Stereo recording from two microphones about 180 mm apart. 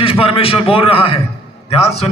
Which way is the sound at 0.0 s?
30° left (ahead or behind).